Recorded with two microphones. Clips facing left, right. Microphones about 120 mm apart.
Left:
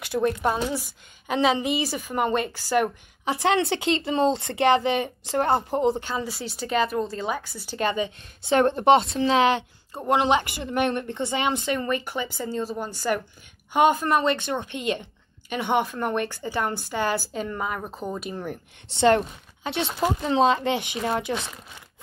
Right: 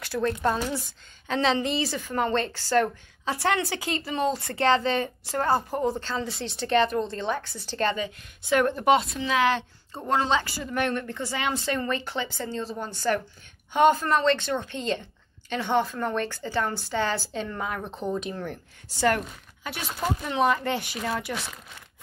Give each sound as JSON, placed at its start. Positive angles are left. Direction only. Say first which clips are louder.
{"t": 0.0, "sound": "a sound", "louder": "left 3 dB", "side_deg": 20}
{"t": 0.3, "sound": "a woman's voice", "louder": "left 1 dB", "side_deg": 5}
{"t": 6.2, "sound": "a woman's voice", "louder": "even", "side_deg": 5}
{"t": 7.9, "sound": "a woman's voice", "louder": "left 3 dB", "side_deg": 25}
{"t": 18.9, "sound": "a woman's voice", "louder": "left 5 dB", "side_deg": 25}